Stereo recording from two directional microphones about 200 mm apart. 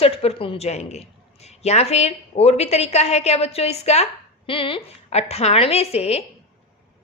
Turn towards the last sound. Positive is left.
turn(degrees=30)  # may be behind; listen again after turning